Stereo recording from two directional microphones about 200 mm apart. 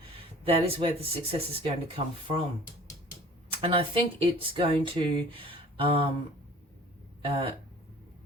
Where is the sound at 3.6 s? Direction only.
25° right (ahead or behind).